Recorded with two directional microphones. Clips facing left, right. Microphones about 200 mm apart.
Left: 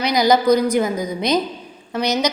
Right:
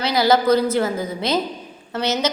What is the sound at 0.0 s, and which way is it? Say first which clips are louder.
A woman's voice: left 1 dB; 15° left (ahead or behind).